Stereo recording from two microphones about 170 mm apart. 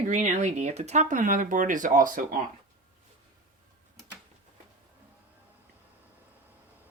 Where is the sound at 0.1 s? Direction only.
40° right (ahead or behind).